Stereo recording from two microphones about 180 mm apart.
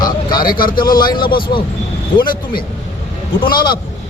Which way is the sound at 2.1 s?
25° left (ahead or behind).